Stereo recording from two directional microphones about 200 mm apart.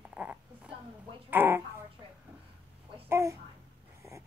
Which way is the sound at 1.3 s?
10° right (ahead or behind).